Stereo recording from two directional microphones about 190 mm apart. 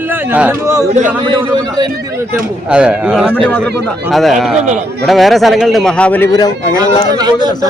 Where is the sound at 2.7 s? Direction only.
5° right (ahead or behind).